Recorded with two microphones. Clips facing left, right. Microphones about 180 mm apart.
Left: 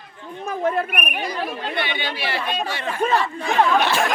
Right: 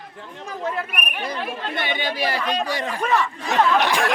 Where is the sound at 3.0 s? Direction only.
35° left (ahead or behind).